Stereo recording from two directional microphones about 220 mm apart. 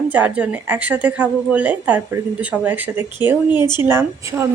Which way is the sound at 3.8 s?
10° right (ahead or behind).